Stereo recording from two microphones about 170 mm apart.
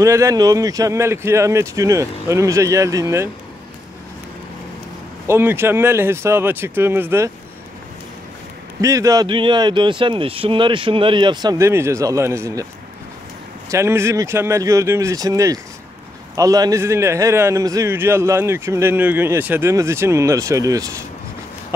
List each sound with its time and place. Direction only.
0.0 s a man's voice: 20° right (ahead or behind)
5.2 s a man's voice: 15° right (ahead or behind)
8.8 s speech: 20° right (ahead or behind)
13.7 s a man's voice: 15° right (ahead or behind)